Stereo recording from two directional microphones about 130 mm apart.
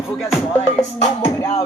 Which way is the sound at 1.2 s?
25° left (ahead or behind).